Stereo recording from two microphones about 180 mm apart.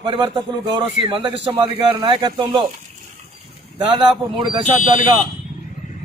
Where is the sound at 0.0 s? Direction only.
25° right (ahead or behind).